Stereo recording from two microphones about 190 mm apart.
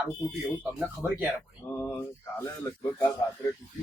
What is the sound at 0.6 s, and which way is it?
Speech, 5° right (ahead or behind).